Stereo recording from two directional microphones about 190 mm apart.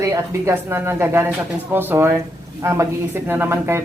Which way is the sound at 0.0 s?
15° right (ahead or behind).